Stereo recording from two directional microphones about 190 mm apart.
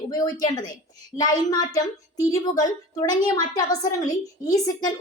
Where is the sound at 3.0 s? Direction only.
20° left (ahead or behind).